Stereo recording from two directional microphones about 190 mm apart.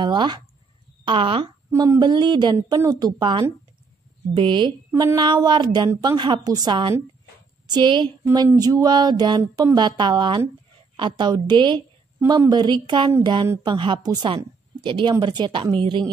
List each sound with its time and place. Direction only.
0.0 s speech: 25° right (ahead or behind)
1.7 s a woman's voice: 15° right (ahead or behind)
8.2 s speech: 10° right (ahead or behind)